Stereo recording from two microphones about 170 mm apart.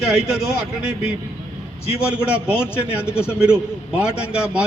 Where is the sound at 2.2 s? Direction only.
5° right (ahead or behind).